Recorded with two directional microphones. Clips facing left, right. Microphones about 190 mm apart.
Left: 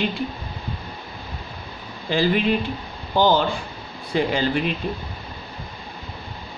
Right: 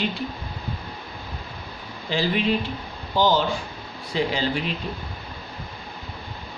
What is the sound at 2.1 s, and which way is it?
A woman's voice, 55° left (ahead or behind).